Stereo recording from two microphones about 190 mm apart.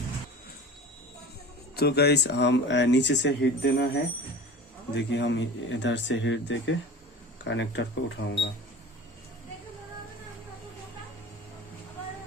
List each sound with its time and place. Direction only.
1.7 s speech: 60° left (ahead or behind)
4.9 s speech: 70° left (ahead or behind)